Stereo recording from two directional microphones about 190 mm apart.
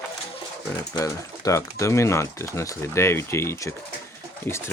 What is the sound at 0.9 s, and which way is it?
Speech, 20° left (ahead or behind).